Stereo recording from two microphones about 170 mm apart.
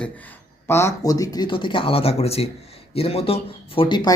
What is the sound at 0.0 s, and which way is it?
Speech, 10° left (ahead or behind).